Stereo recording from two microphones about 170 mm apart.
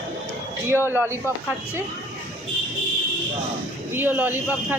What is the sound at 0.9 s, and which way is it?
Speech, 15° right (ahead or behind).